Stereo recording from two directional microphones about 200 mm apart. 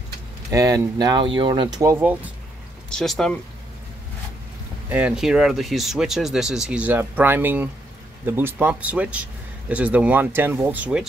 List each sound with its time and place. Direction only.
0.5 s speech: 15° right (ahead or behind)
2.9 s speech: centre (ahead or behind)
4.8 s speech: 5° right (ahead or behind)